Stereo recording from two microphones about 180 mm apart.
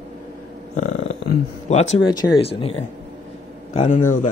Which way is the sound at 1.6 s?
40° left (ahead or behind).